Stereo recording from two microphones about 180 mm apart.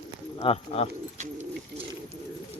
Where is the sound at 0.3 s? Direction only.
35° left (ahead or behind).